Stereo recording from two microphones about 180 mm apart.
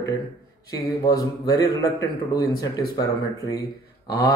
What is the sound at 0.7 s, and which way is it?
A man's voice, 20° left (ahead or behind).